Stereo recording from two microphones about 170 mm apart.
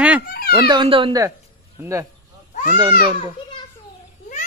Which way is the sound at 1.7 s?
20° right (ahead or behind).